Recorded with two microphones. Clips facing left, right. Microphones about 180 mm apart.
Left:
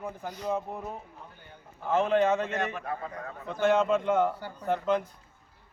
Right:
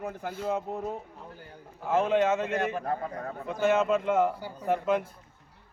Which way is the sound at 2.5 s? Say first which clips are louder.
Right 3 dB; 35° right (ahead or behind).